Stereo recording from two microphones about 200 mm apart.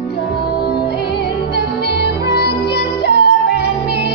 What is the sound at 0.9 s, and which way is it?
Music, 55° left (ahead or behind).